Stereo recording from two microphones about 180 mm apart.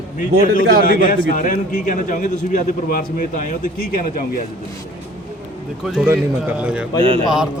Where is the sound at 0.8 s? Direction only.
50° left (ahead or behind).